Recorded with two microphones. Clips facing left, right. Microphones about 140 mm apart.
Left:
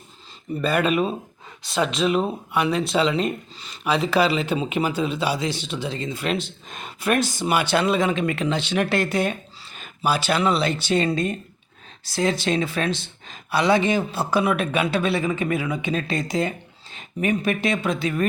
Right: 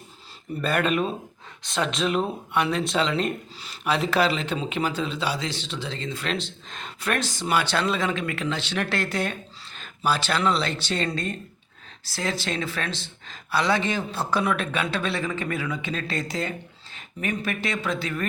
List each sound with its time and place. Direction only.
0.6 s speech: 5° left (ahead or behind)